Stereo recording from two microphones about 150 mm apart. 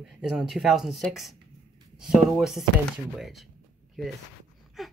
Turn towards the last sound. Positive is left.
turn(degrees=0)  # may be behind; listen again after turning